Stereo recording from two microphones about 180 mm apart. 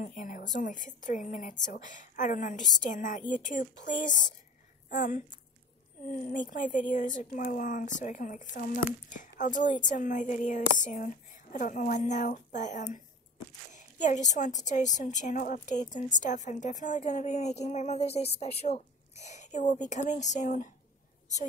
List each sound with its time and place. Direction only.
0.0 s a woman's voice: 45° left (ahead or behind)